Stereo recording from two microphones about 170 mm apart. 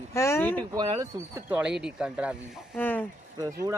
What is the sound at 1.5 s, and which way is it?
Speech, 5° right (ahead or behind).